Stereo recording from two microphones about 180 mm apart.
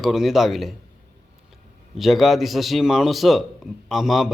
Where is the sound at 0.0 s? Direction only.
Centre (ahead or behind).